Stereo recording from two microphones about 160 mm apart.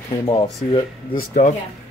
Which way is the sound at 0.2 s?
25° left (ahead or behind).